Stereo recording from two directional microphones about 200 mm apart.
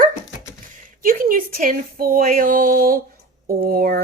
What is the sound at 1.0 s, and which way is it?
Speech, 45° right (ahead or behind).